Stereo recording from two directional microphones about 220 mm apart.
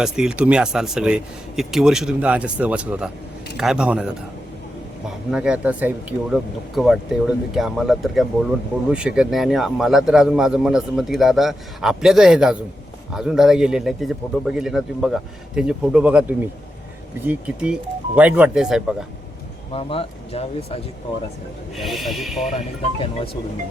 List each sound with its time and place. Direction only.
0.0 s speech: 5° right (ahead or behind)
5.3 s speech: 5° right (ahead or behind)
17.2 s speech: 5° right (ahead or behind)
19.7 s speech: 25° left (ahead or behind)
21.8 s speech: centre (ahead or behind)
22.5 s speech: 25° left (ahead or behind)